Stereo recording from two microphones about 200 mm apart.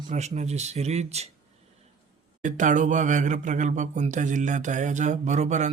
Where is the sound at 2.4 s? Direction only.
40° right (ahead or behind).